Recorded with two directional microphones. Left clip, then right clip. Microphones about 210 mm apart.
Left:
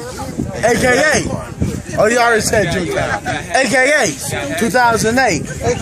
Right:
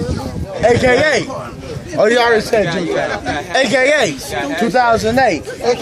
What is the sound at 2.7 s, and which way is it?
Speech, 40° right (ahead or behind).